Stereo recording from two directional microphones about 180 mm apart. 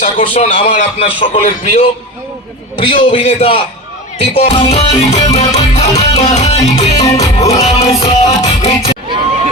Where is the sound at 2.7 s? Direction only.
30° left (ahead or behind).